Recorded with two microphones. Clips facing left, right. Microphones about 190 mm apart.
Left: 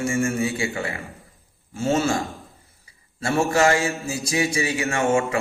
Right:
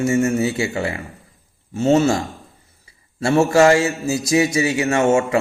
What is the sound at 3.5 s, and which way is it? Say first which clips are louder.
A man's voice: right 6 dB; 25° right (ahead or behind).